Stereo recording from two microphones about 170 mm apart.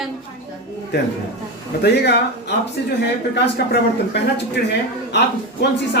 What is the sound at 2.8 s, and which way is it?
Speech, 90° left.